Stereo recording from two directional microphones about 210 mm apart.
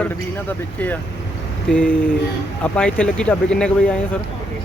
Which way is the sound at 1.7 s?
5° left (ahead or behind).